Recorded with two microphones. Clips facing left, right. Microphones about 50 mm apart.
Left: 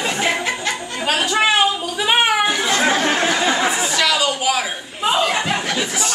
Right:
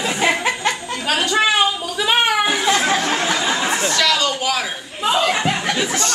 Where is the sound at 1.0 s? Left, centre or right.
Centre.